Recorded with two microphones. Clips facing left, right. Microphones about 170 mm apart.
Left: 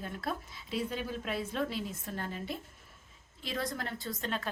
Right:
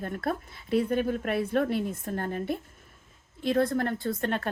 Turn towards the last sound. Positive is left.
turn(degrees=-55)  # may be behind; listen again after turning